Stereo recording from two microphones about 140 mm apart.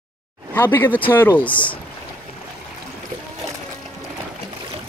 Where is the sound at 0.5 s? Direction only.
15° left (ahead or behind).